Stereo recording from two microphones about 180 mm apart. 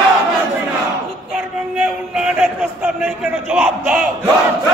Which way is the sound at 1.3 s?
5° right (ahead or behind).